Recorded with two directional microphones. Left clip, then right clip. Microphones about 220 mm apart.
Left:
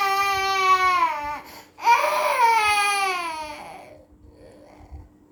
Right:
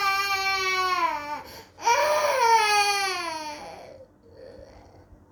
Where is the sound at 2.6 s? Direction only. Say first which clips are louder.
Left 2 dB; 50° left (ahead or behind).